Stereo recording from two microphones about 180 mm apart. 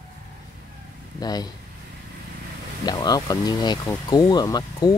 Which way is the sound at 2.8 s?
20° left (ahead or behind).